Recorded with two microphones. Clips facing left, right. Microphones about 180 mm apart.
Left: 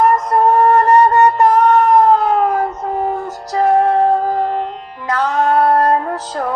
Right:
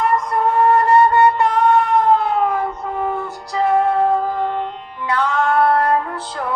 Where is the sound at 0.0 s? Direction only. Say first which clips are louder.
Left 5 dB; 40° left (ahead or behind).